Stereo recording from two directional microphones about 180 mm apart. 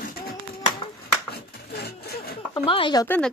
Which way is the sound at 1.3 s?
60° left (ahead or behind).